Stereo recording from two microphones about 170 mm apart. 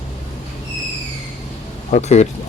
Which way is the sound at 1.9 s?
40° left (ahead or behind).